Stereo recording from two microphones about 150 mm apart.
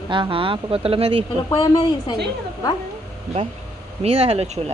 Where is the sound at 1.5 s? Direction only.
30° left (ahead or behind).